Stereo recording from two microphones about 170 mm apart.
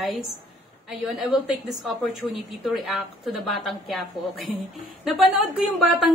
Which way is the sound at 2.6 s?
Centre (ahead or behind).